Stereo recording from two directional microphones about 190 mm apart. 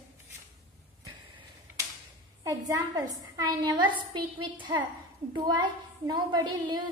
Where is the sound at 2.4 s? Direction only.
20° right (ahead or behind).